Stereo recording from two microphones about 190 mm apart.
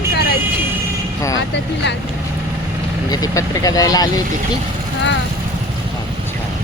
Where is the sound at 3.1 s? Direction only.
20° left (ahead or behind).